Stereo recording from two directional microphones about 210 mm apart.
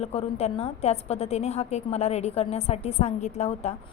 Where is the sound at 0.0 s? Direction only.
30° left (ahead or behind).